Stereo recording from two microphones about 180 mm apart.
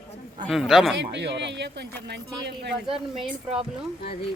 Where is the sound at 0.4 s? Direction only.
Centre (ahead or behind).